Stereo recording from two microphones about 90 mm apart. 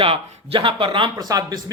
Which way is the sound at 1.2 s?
45° right (ahead or behind).